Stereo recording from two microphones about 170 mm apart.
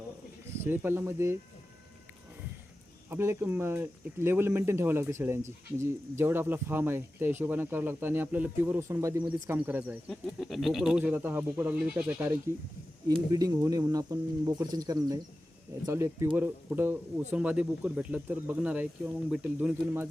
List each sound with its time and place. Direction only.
0.6 s speech: 10° right (ahead or behind)
3.1 s speech: 15° right (ahead or behind)
10.1 s speech: centre (ahead or behind)
13.1 s speech: 20° right (ahead or behind)